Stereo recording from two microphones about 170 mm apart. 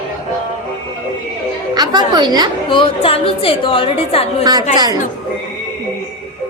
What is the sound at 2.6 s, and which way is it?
A woman's voice, 30° left (ahead or behind).